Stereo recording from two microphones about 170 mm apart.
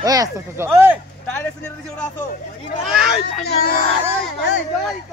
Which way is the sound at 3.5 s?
60° left (ahead or behind).